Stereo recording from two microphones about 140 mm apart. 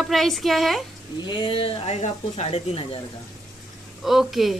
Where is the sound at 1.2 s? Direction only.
35° left (ahead or behind).